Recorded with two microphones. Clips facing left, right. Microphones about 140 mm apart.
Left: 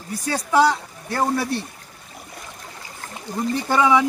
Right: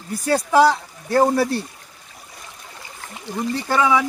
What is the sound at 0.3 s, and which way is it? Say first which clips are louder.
Speech: right 3 dB; centre (ahead or behind).